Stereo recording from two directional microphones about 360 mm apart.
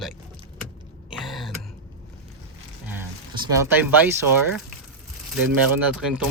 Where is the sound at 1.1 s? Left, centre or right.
Centre.